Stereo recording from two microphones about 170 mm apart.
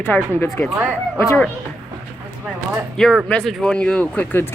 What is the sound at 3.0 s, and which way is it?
Speech, centre (ahead or behind).